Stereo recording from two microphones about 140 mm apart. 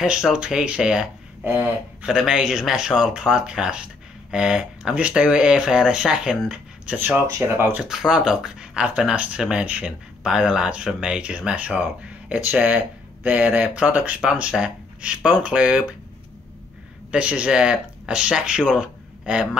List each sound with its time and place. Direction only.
0.0 s speech: 5° right (ahead or behind)
7.0 s speech: 15° right (ahead or behind)
7.9 s speech: 5° right (ahead or behind)
17.1 s speech: 5° right (ahead or behind)